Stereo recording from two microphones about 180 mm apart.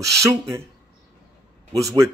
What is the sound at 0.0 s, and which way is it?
Speech, 15° right (ahead or behind).